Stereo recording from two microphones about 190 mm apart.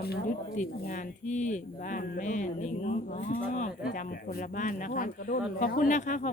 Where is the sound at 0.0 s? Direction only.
50° left (ahead or behind).